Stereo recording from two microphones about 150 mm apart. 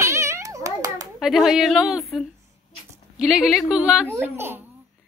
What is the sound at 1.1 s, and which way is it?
A woman's voice, centre (ahead or behind).